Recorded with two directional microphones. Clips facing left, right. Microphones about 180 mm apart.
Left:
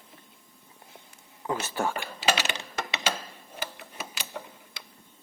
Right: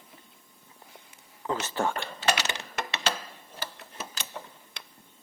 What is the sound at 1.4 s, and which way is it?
Speech, 10° left (ahead or behind).